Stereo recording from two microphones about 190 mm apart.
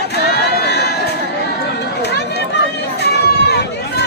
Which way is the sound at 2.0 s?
60° left (ahead or behind).